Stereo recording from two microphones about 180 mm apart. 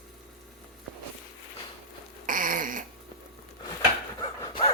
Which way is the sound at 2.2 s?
50° right (ahead or behind).